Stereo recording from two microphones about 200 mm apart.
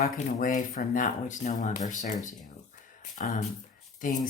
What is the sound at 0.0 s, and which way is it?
Speech, 40° left (ahead or behind).